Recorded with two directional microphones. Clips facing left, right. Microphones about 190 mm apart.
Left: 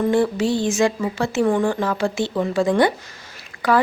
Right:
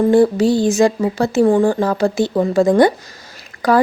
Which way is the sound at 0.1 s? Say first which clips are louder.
Right 6 dB; 35° right (ahead or behind).